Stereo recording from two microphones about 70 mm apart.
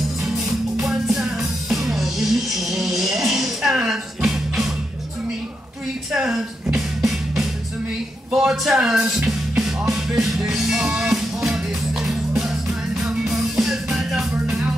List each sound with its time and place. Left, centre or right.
0.2 s music: centre
6.1 s music: centre